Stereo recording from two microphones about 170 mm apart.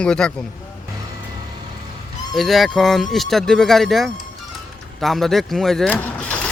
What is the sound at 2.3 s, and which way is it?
Speech, centre (ahead or behind).